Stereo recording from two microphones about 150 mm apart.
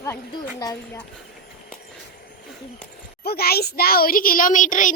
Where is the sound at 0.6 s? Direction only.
25° left (ahead or behind).